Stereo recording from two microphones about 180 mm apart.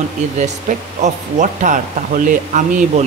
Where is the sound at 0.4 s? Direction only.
40° right (ahead or behind).